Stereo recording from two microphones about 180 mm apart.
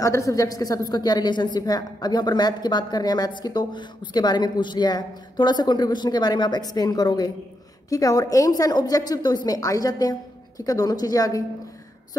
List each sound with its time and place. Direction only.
0.0 s a woman's voice: 15° left (ahead or behind)